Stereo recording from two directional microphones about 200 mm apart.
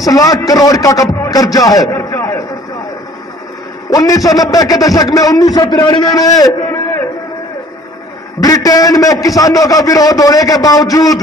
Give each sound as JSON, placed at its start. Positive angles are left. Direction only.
{"t": 0.0, "sound": "a man's voice", "side_deg": 15}
{"t": 1.2, "sound": "a sound", "side_deg": 20}
{"t": 3.9, "sound": "a man's voice", "side_deg": 20}
{"t": 8.4, "sound": "a man's voice", "side_deg": 20}